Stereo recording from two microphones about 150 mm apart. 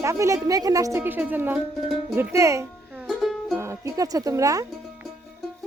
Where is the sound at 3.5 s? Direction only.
20° right (ahead or behind).